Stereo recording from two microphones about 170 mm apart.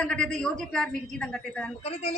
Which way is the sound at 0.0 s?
5° left (ahead or behind).